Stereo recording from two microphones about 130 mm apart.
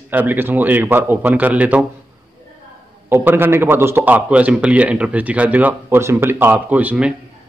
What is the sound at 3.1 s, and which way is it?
A man's voice, 15° right (ahead or behind).